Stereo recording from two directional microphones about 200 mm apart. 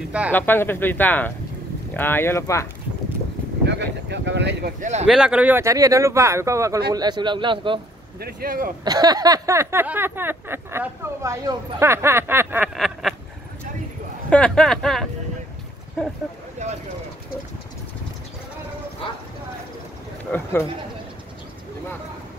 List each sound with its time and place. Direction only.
0.3 s speech: 10° left (ahead or behind)
3.6 s speech: 60° right (ahead or behind)
4.7 s speech: 35° right (ahead or behind)
5.0 s a sound: 5° right (ahead or behind)
6.9 s speech: 20° right (ahead or behind)
8.2 s speech: 50° right (ahead or behind)
8.8 s a sound: 20° right (ahead or behind); by 13.1 s centre (ahead or behind)
14.3 s speech: 5° left (ahead or behind)
20.2 s speech: 10° left (ahead or behind)